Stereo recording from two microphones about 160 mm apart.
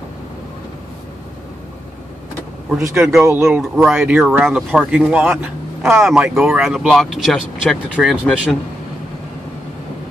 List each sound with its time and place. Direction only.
2.9 s speech: 5° right (ahead or behind)
3.3 s speech: 15° right (ahead or behind)
3.7 s speech: 5° right (ahead or behind)